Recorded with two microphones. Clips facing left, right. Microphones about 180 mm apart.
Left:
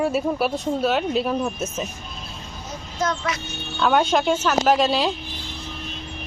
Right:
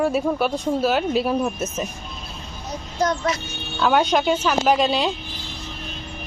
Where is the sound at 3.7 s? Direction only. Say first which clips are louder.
Even; 5° right (ahead or behind).